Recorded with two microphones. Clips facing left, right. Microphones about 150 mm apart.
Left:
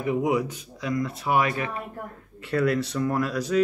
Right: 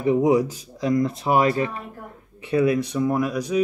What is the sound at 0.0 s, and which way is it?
Speech, 35° right (ahead or behind).